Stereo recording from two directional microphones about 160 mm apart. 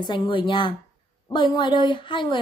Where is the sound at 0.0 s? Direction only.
30° left (ahead or behind).